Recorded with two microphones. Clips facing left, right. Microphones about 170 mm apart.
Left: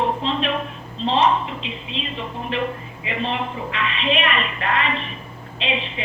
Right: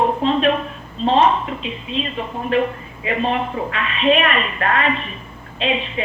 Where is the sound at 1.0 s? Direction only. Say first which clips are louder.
Right 3 dB; 50° right (ahead or behind).